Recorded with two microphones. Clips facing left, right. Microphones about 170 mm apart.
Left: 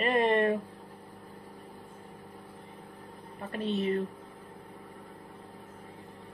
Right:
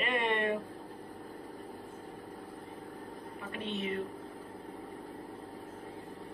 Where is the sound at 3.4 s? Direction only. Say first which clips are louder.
Left 7 dB; 35° left (ahead or behind).